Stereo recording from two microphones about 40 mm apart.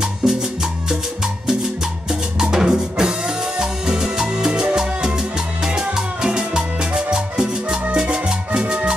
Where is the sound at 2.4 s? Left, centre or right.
Centre.